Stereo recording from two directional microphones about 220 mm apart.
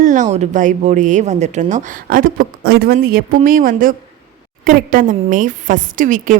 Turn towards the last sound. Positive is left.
turn(degrees=-35)  # may be behind; listen again after turning